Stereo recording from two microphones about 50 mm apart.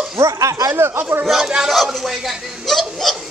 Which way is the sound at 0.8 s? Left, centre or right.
Right.